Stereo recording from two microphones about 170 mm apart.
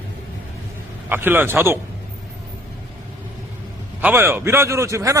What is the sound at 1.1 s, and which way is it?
Speech, 10° right (ahead or behind).